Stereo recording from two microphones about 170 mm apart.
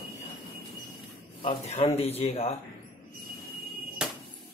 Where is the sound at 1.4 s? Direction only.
35° left (ahead or behind).